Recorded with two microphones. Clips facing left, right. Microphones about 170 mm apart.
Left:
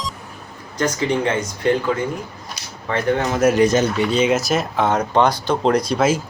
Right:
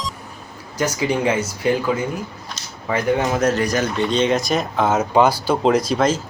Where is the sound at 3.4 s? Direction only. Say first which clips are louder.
Left 4 dB; 10° left (ahead or behind).